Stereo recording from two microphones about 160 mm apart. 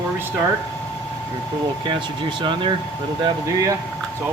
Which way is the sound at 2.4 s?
30° right (ahead or behind).